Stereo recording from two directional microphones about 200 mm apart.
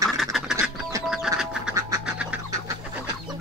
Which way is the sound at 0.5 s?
15° right (ahead or behind).